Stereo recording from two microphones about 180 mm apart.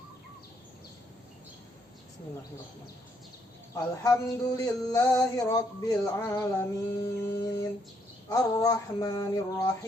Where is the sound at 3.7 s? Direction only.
20° left (ahead or behind).